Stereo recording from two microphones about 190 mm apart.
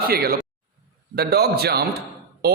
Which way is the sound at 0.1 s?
55° right (ahead or behind).